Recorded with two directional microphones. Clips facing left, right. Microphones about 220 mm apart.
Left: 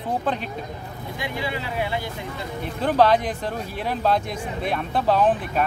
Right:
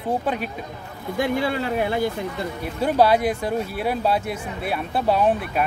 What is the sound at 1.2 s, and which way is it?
Speech, 50° right (ahead or behind).